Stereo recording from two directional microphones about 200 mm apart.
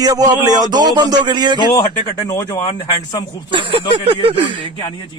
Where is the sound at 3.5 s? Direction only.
25° right (ahead or behind).